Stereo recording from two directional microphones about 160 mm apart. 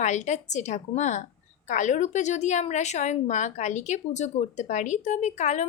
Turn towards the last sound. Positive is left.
turn(degrees=45)  # may be behind; listen again after turning